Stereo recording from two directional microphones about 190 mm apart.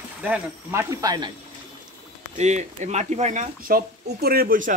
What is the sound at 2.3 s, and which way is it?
Speech, 35° right (ahead or behind).